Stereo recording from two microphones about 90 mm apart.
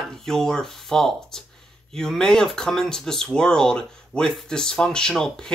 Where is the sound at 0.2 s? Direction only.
5° left (ahead or behind).